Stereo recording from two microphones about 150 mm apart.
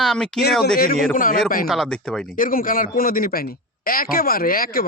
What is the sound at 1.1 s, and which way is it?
Speech, 70° left (ahead or behind).